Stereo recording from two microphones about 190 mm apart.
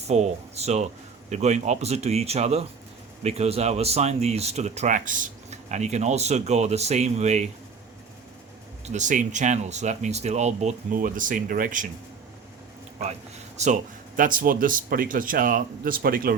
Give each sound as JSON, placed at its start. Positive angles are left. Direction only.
{"t": 0.1, "sound": "speech", "side_deg": -35}
{"t": 8.9, "sound": "speech", "side_deg": -40}
{"t": 13.6, "sound": "speech", "side_deg": -35}